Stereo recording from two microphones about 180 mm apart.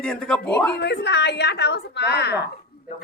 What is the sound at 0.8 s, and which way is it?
Speech, 70° left (ahead or behind).